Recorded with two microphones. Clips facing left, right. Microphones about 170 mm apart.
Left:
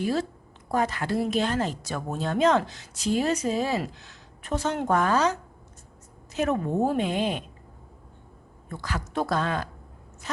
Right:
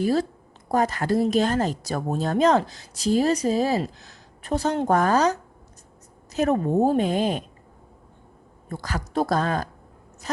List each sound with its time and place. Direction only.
0.0 s a woman's voice: 40° right (ahead or behind)
8.7 s a woman's voice: 40° right (ahead or behind)